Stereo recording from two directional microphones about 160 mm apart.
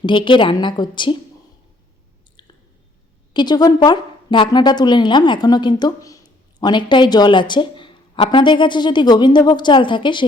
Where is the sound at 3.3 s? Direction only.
25° left (ahead or behind).